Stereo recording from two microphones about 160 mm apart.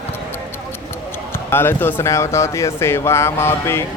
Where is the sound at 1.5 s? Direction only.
15° left (ahead or behind).